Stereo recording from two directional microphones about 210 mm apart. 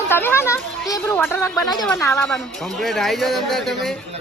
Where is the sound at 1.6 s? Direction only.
Centre (ahead or behind).